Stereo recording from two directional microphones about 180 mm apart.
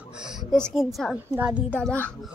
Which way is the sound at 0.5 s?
Centre (ahead or behind).